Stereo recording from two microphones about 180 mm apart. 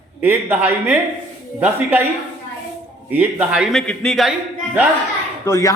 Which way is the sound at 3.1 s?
10° right (ahead or behind).